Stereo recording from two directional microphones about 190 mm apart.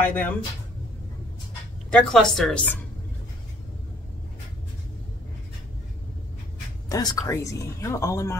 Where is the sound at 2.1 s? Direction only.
Centre (ahead or behind).